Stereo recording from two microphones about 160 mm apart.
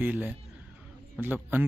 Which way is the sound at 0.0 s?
10° right (ahead or behind).